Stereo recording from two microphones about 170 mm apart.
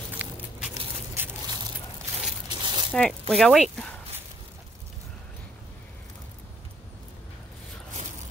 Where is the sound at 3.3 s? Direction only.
5° left (ahead or behind).